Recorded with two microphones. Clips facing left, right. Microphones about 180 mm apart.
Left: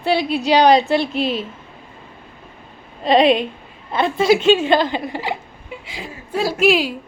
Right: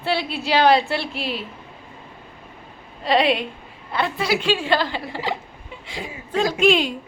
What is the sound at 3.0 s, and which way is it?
A woman's voice, 20° left (ahead or behind).